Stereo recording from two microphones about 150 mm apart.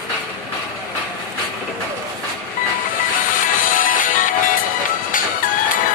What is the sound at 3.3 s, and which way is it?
Music, 65° left (ahead or behind).